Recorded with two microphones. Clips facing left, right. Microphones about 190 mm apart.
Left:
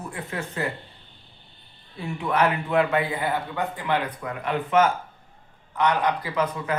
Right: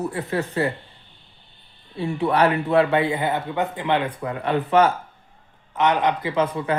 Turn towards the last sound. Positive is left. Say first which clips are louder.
# right 4 dB
turn(degrees=-30)  # may be behind; listen again after turning